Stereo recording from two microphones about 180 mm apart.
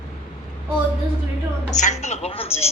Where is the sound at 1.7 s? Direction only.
40° left (ahead or behind).